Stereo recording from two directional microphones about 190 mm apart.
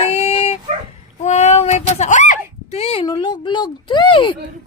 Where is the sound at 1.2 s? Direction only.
35° left (ahead or behind).